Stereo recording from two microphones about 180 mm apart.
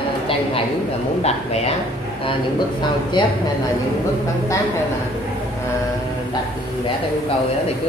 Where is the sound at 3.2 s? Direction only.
25° left (ahead or behind).